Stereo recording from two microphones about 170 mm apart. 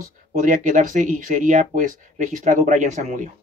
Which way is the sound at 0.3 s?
50° right (ahead or behind).